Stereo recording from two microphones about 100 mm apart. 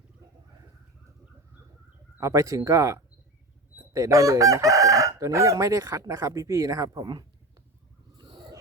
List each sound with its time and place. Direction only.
2.2 s chicken: 35° right (ahead or behind)
7.0 s speech: 45° right (ahead or behind)
8.2 s a sound: 50° right (ahead or behind)